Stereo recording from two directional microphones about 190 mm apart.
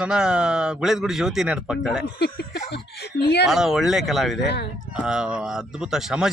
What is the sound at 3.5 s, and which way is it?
Speech, centre (ahead or behind).